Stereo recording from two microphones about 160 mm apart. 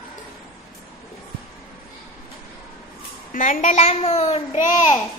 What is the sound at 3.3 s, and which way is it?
A child's voice, 55° left (ahead or behind).